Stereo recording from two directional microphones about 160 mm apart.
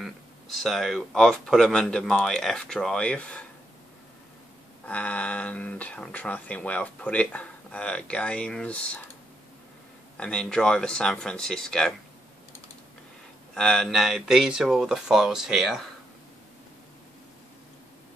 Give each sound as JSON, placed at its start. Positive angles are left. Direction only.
{"t": 0.0, "sound": "speech", "side_deg": 0}
{"t": 4.8, "sound": "speech", "side_deg": 10}
{"t": 10.1, "sound": "speech", "side_deg": 5}
{"t": 13.6, "sound": "speech", "side_deg": 5}